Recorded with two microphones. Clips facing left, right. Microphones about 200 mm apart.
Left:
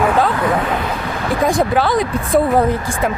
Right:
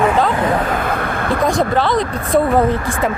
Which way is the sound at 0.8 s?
55° right (ahead or behind).